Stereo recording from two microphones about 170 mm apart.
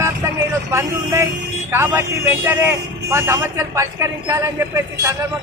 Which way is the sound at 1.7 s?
15° right (ahead or behind).